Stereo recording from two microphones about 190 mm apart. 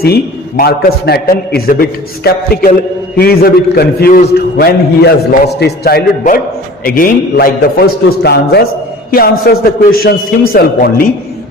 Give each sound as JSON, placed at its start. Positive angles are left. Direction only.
{"t": 0.0, "sound": "a man's voice", "side_deg": 55}